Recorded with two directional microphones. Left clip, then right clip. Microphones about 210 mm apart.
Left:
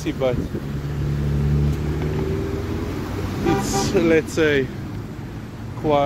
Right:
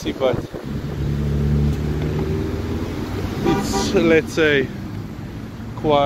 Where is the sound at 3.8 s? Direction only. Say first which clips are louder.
Right 2 dB; 10° left (ahead or behind).